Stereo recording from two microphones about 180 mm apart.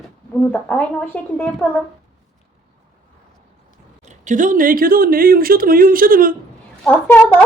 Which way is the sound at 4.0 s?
40° right (ahead or behind).